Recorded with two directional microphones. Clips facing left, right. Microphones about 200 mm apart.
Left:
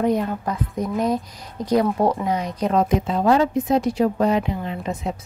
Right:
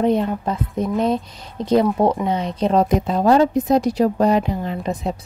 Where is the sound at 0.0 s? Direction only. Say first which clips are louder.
Right 2 dB; 25° right (ahead or behind).